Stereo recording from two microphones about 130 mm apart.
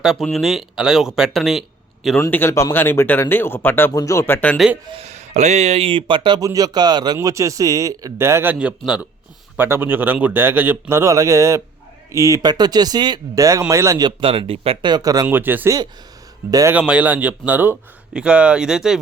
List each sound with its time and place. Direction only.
0.0 s speech: 5° right (ahead or behind)
2.2 s speech: 20° left (ahead or behind)
4.9 s speech: 50° right (ahead or behind); by 8.5 s 20° right (ahead or behind)
8.5 s speech: 5° right (ahead or behind); by 14.1 s 25° right (ahead or behind)
14.2 s speech: 45° right (ahead or behind); by 15.3 s 30° right (ahead or behind)
15.3 s speech: 15° right (ahead or behind)
16.5 s speech: 25° right (ahead or behind)
16.7 s speech: 10° right (ahead or behind)